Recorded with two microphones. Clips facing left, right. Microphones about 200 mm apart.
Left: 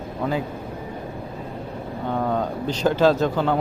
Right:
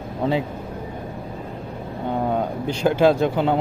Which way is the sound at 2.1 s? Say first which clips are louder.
Right 1 dB; 15° right (ahead or behind).